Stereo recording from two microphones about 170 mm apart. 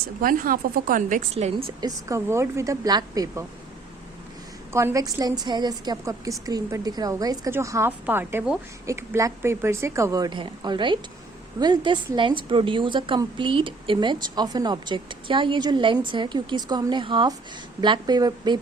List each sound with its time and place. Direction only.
0.2 s a woman's voice: 55° right (ahead or behind)
1.6 s a woman's voice: 20° right (ahead or behind)
4.7 s a woman's voice: 15° right (ahead or behind)